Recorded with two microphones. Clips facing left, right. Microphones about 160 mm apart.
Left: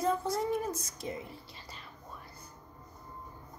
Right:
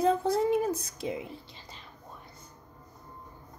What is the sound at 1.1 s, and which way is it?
Speech, 15° right (ahead or behind).